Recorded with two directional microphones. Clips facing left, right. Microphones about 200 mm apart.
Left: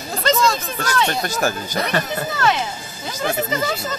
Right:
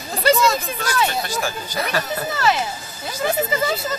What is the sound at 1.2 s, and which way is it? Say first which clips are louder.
Speech: left 4 dB; 45° left (ahead or behind).